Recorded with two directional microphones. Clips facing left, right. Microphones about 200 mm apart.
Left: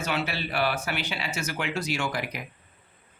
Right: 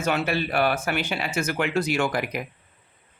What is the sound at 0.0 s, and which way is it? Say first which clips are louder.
Speech: right 5 dB; 50° right (ahead or behind).